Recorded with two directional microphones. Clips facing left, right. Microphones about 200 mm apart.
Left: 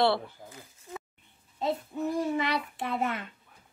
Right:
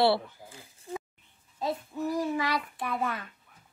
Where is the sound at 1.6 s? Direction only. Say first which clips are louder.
Left 1 dB; 25° left (ahead or behind).